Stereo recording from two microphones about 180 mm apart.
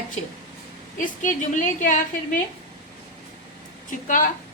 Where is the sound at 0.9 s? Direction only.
45° left (ahead or behind).